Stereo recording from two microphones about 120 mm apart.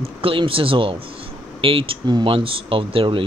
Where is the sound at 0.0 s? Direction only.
50° right (ahead or behind).